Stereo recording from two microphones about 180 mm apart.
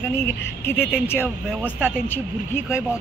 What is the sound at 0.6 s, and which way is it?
Speech, 10° left (ahead or behind).